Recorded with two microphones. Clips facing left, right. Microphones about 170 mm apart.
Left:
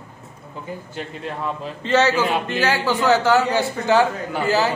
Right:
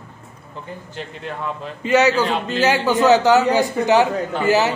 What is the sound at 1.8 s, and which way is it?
A man's voice, 10° right (ahead or behind).